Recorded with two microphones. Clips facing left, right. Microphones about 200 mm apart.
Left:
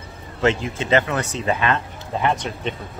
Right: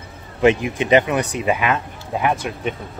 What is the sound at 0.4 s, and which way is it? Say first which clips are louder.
Speech: right 5 dB; 15° right (ahead or behind).